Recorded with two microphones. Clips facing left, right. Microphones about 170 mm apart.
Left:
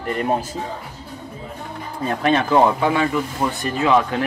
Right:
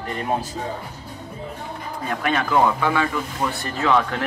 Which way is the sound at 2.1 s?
30° left (ahead or behind).